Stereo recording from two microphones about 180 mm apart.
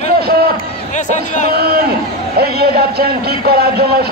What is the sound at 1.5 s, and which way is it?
A man's voice, 55° right (ahead or behind).